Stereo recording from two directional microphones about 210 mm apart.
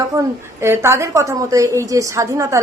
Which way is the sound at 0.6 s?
10° right (ahead or behind).